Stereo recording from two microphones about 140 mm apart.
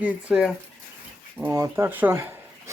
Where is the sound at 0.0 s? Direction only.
10° right (ahead or behind).